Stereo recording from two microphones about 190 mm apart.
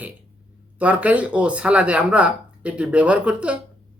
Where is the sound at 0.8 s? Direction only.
5° right (ahead or behind).